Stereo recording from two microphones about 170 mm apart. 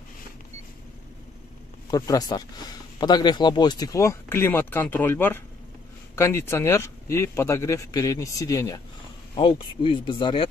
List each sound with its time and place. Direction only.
1.9 s speech: 20° left (ahead or behind)
9.3 s speech: 30° left (ahead or behind)